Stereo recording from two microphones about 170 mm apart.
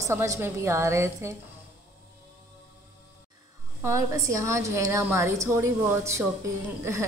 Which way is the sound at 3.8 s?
20° right (ahead or behind).